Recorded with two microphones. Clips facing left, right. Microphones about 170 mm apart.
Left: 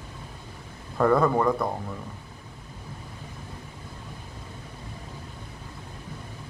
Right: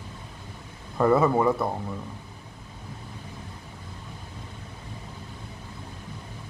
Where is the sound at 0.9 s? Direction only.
5° right (ahead or behind).